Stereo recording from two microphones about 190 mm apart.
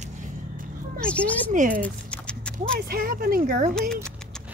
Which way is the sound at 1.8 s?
5° left (ahead or behind).